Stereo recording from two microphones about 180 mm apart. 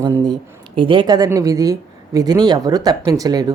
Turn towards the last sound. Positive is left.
turn(degrees=-20)  # may be behind; listen again after turning